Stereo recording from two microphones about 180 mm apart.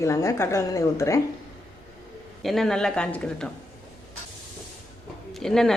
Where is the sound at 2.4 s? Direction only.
Centre (ahead or behind).